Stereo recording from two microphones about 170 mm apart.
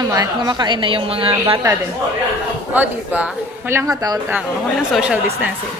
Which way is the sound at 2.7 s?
10° right (ahead or behind).